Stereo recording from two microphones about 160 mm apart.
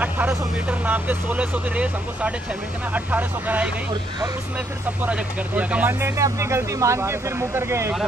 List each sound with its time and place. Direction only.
0.0 s speech: 10° right (ahead or behind)
5.0 s speech: 10° right (ahead or behind)